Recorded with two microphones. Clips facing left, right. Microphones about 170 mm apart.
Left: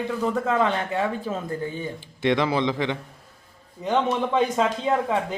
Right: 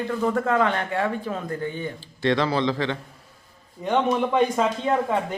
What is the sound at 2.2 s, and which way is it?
Speech, 15° left (ahead or behind).